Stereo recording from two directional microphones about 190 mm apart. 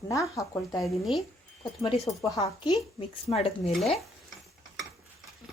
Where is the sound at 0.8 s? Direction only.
Centre (ahead or behind).